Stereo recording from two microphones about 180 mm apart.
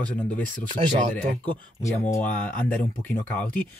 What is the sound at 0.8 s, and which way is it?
Speech, 30° right (ahead or behind).